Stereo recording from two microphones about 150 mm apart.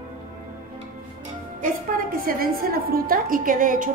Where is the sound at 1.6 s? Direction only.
70° right (ahead or behind).